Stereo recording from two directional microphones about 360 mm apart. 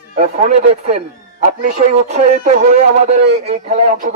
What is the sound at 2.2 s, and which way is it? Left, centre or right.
Speech, right.